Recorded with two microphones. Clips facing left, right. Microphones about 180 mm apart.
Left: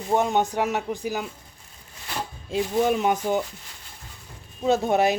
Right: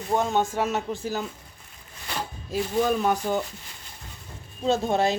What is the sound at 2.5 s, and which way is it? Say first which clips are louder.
Speech: left 2 dB; 20° left (ahead or behind).